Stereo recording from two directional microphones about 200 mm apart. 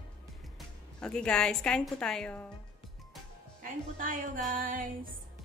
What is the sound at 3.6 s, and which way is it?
Speech, 40° right (ahead or behind).